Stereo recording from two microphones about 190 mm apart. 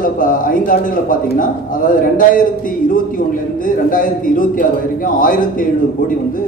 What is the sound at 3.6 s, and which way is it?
A man's voice, 45° left (ahead or behind).